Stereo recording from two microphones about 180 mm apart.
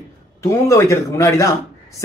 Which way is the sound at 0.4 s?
15° left (ahead or behind).